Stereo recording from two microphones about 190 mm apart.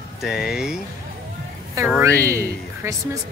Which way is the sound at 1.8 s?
15° right (ahead or behind).